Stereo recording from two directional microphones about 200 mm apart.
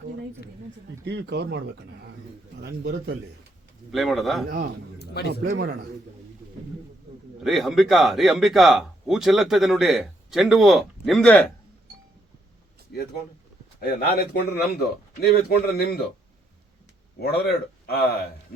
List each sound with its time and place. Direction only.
1.0 s speech: 60° right (ahead or behind)
3.9 s speech: centre (ahead or behind)
4.4 s a man's voice: 45° right (ahead or behind)
4.9 s a sound: 55° left (ahead or behind)
5.3 s a man's voice: 45° right (ahead or behind)
7.4 s speech: centre (ahead or behind)
13.8 s speech: 50° left (ahead or behind)
17.2 s speech: 55° left (ahead or behind)